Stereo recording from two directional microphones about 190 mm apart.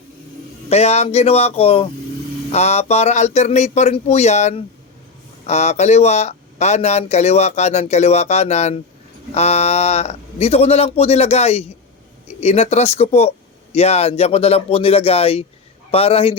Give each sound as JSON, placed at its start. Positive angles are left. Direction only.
{"t": 0.7, "sound": "speech", "side_deg": 35}